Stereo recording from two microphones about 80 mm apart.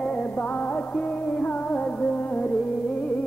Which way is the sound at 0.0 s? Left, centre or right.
Centre.